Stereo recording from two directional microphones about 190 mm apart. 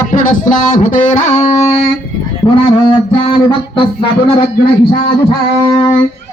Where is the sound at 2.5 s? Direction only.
25° left (ahead or behind).